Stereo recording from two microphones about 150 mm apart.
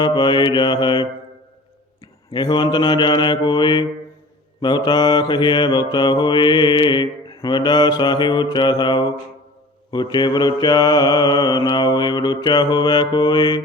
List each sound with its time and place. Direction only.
0.0 s mantra: 30° left (ahead or behind)
2.3 s mantra: 30° left (ahead or behind)